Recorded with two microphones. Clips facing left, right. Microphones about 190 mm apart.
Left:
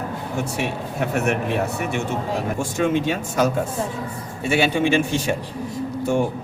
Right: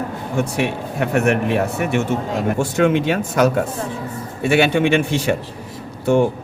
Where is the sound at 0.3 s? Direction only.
60° right (ahead or behind).